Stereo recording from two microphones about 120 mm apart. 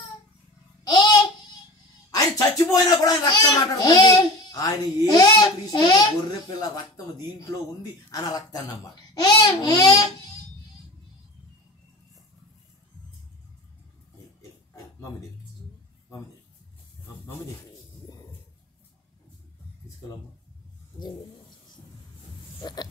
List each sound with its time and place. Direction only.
0.8 s babbling: 35° left (ahead or behind)
2.0 s speech: 30° left (ahead or behind)
8.1 s speech: 30° left (ahead or behind)
22.6 s a sound: 35° left (ahead or behind)